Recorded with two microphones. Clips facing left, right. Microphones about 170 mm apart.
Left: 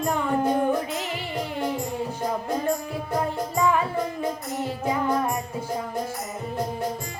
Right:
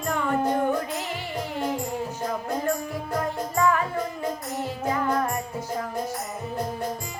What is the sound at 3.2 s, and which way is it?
Music, 15° left (ahead or behind).